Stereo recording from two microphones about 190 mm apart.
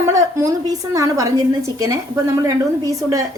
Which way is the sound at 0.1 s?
15° right (ahead or behind).